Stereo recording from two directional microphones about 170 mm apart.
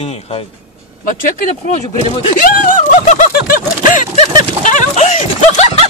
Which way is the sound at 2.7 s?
50° left (ahead or behind).